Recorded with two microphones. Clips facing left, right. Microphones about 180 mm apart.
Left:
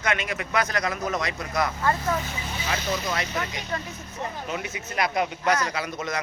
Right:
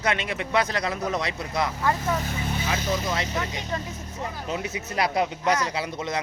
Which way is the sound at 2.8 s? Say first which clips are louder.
Right 2 dB; 50° right (ahead or behind).